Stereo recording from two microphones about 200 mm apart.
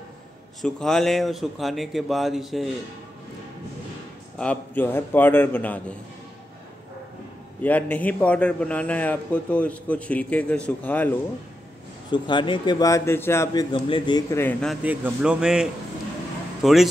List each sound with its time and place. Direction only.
0.6 s speech: 5° left (ahead or behind)
4.4 s a man's voice: 5° left (ahead or behind)
7.6 s a man's voice: 10° left (ahead or behind)
12.1 s speech: 25° left (ahead or behind)
14.6 s speech: 5° right (ahead or behind)